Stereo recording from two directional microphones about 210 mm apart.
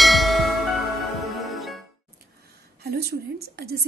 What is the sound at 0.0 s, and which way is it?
Music, centre (ahead or behind).